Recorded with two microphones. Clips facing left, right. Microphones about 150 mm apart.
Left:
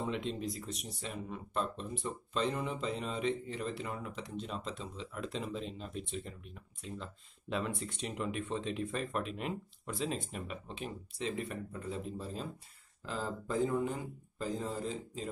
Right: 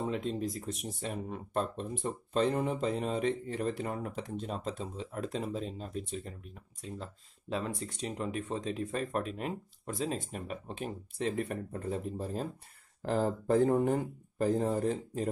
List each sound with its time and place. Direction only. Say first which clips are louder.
0.0 s speech: right 3 dB; 45° right (ahead or behind); by 15.2 s 60° right (ahead or behind)